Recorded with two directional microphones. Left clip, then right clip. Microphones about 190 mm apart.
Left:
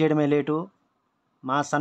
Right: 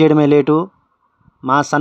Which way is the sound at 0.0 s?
30° right (ahead or behind).